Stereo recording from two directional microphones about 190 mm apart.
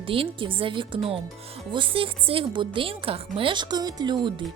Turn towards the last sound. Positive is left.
turn(degrees=-25)  # may be behind; listen again after turning